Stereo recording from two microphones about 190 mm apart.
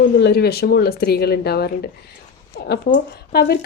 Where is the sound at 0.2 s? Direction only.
60° left (ahead or behind).